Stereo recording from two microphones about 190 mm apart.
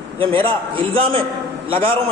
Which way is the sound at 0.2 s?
30° right (ahead or behind).